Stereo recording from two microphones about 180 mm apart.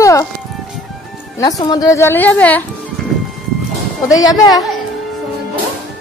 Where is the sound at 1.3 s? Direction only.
20° left (ahead or behind).